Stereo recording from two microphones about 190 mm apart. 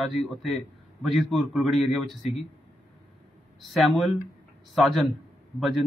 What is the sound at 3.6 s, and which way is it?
Speech, centre (ahead or behind).